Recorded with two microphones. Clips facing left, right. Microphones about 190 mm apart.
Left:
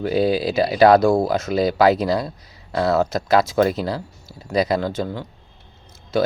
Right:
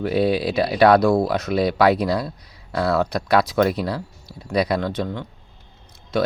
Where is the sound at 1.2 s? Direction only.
Centre (ahead or behind).